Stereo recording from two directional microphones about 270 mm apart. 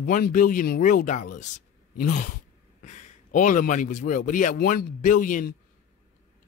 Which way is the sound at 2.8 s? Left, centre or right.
Left.